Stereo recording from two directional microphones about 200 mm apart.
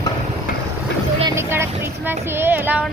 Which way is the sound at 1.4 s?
10° right (ahead or behind).